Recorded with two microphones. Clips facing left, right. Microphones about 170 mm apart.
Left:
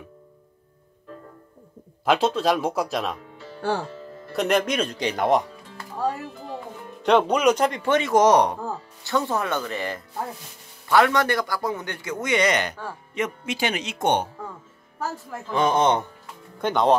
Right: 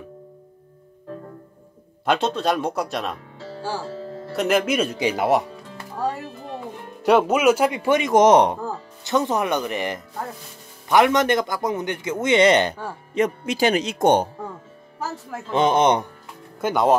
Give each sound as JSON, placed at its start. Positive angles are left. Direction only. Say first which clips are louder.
{"t": 2.0, "sound": "speech", "louder": "left 1 dB", "side_deg": 5}
{"t": 3.3, "sound": "music", "louder": "right 5 dB", "side_deg": -90}
{"t": 4.4, "sound": "speech", "louder": "right 2 dB", "side_deg": -5}
{"t": 7.0, "sound": "a man's voice", "louder": "right 2 dB", "side_deg": -5}
{"t": 15.5, "sound": "a man's voice", "louder": "right 2 dB", "side_deg": -20}
{"t": 16.6, "sound": "speech", "louder": "right 1 dB", "side_deg": -5}